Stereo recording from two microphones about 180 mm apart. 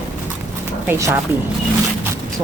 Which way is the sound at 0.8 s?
15° right (ahead or behind).